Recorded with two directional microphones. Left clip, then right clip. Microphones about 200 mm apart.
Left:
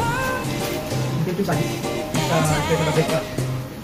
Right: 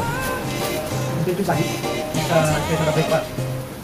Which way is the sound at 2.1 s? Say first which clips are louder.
Right 2 dB; centre (ahead or behind).